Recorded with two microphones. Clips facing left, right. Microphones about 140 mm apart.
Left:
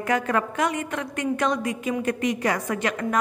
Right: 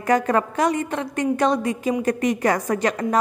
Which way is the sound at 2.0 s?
45° right (ahead or behind).